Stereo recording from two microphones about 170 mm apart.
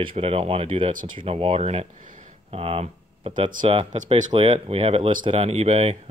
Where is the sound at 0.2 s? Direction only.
35° right (ahead or behind).